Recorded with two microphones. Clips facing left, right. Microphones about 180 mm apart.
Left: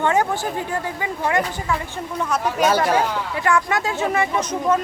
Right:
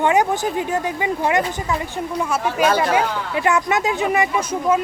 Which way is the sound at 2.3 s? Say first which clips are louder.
Even; 5° right (ahead or behind).